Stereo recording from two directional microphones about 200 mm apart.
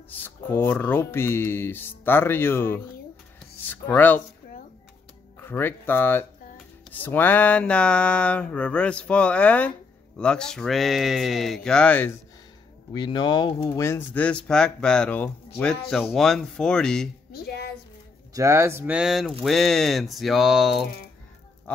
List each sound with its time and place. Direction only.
0.1 s speech: 10° left (ahead or behind)
5.4 s speech: 10° left (ahead or behind)
6.9 s a sound: 10° left (ahead or behind)
12.9 s speech: 20° left (ahead or behind)
15.6 s a sound: 5° left (ahead or behind)
17.3 s a woman's voice: 50° left (ahead or behind)
18.3 s speech: 15° right (ahead or behind)
19.4 s a sound: centre (ahead or behind)
21.7 s goose: 5° left (ahead or behind)